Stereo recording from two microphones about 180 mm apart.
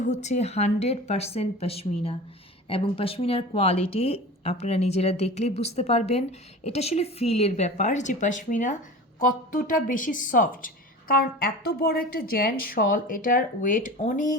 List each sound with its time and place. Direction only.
0.0 s speech: 40° left (ahead or behind)